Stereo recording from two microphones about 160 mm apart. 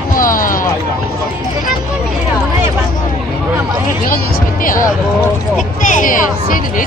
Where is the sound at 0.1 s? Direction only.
60° left (ahead or behind).